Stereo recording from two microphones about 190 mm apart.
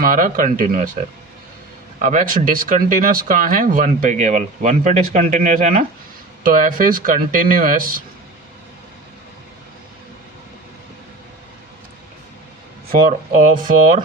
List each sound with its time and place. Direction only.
0.0 s speech: 45° right (ahead or behind)
2.0 s speech: 40° right (ahead or behind)
12.9 s speech: 40° right (ahead or behind)